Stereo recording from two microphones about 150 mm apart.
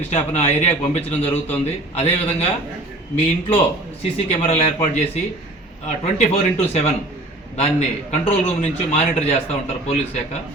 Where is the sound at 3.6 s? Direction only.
40° left (ahead or behind).